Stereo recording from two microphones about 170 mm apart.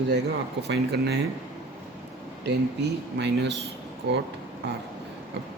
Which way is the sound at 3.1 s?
90° right.